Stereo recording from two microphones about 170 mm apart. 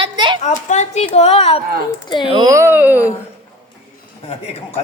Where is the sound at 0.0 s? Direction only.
25° right (ahead or behind).